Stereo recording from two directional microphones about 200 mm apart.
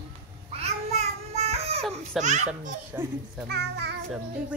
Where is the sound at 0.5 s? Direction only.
30° right (ahead or behind).